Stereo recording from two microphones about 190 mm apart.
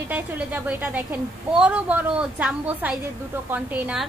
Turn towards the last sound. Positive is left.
turn(degrees=-10)  # may be behind; listen again after turning